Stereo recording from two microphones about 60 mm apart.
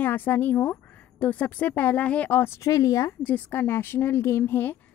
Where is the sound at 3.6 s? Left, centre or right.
Left.